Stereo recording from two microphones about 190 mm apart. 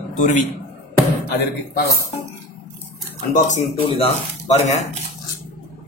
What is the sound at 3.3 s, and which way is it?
Speech, 40° left (ahead or behind).